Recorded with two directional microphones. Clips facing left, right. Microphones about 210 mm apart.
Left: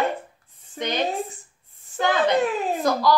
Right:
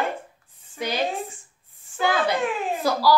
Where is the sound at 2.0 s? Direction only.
10° right (ahead or behind).